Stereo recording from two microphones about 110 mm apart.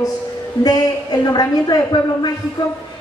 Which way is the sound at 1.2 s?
35° left (ahead or behind).